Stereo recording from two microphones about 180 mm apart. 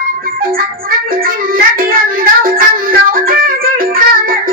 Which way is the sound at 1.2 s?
50° right (ahead or behind).